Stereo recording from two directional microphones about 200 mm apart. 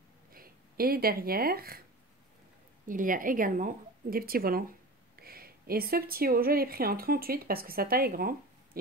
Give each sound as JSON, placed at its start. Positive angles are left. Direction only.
{"t": 0.3, "sound": "speech", "side_deg": -45}
{"t": 2.9, "sound": "speech", "side_deg": -40}